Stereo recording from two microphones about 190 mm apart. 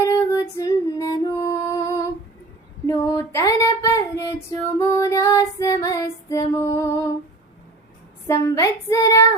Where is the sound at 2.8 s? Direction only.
15° left (ahead or behind).